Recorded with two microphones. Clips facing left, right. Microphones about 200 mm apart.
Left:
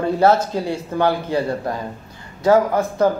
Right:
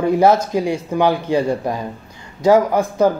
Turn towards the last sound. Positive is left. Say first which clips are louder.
# right 2 dB
turn(degrees=-15)  # may be behind; listen again after turning